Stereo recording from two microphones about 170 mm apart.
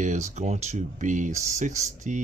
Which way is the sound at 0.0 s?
45° right (ahead or behind).